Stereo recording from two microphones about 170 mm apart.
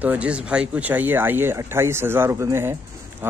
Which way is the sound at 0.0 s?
10° right (ahead or behind).